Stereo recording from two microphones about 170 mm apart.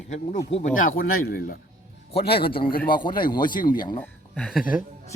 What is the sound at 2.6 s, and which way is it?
Speech, 60° left (ahead or behind).